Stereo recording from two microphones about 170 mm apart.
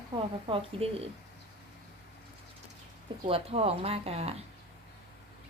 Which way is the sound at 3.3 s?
35° right (ahead or behind).